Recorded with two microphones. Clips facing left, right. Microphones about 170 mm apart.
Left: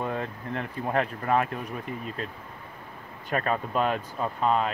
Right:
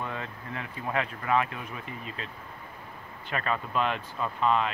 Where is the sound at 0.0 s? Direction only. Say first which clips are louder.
Left 5 dB; 40° left (ahead or behind).